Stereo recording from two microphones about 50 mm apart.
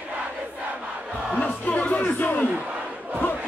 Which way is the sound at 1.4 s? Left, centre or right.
Left.